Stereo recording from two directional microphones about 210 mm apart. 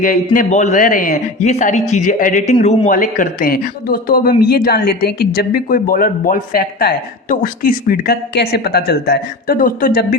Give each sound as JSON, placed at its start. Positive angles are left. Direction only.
{"t": 0.3, "sound": "a man's voice", "side_deg": 35}